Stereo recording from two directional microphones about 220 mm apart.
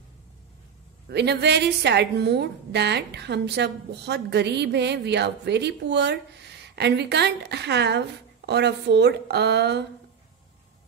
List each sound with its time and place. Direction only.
1.0 s a woman's voice: 50° right (ahead or behind)